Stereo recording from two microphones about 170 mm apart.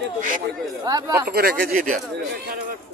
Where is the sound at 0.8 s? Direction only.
20° right (ahead or behind).